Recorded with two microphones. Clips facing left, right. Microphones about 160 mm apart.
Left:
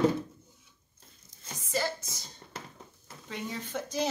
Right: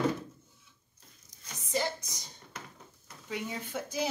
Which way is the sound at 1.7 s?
20° right (ahead or behind).